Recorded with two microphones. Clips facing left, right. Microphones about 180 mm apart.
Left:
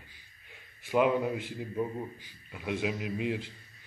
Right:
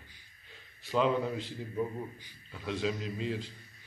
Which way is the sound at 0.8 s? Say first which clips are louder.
Left 3 dB; 15° left (ahead or behind).